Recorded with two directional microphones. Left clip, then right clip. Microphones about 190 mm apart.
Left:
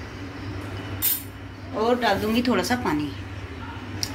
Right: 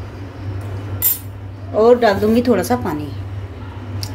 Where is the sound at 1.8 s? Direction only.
55° right (ahead or behind); by 3.0 s 35° right (ahead or behind).